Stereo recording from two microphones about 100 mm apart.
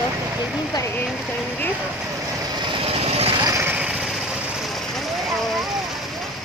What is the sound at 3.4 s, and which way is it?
Vehicle, 25° right (ahead or behind).